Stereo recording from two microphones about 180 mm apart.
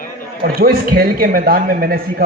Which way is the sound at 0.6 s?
55° right (ahead or behind).